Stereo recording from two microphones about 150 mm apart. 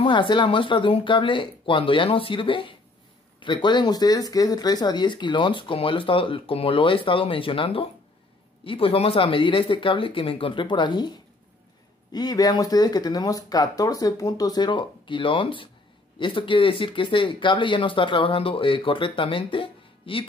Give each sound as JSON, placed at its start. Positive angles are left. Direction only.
{"t": 0.0, "sound": "speech", "side_deg": 35}